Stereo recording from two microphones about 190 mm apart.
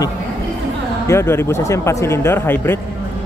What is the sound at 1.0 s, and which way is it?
Speech, 15° left (ahead or behind).